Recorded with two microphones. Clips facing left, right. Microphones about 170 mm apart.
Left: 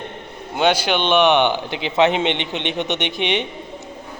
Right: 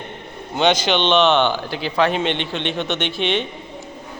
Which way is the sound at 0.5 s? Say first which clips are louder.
Even; 10° left (ahead or behind).